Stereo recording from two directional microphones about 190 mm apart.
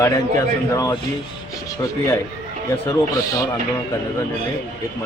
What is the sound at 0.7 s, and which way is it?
Speech, 20° left (ahead or behind).